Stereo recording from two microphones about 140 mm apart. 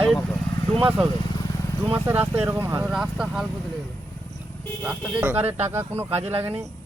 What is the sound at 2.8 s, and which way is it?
Speech, 5° right (ahead or behind).